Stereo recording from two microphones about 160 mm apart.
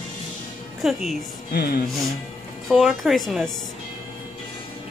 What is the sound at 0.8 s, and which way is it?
Speech, centre (ahead or behind).